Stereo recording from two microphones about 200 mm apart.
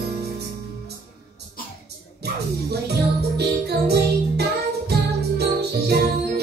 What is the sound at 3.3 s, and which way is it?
Music, 55° right (ahead or behind).